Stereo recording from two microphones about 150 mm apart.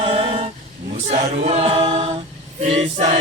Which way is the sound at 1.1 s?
45° right (ahead or behind).